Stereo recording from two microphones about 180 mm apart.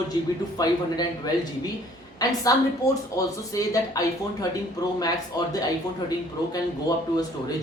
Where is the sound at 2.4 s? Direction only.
20° left (ahead or behind).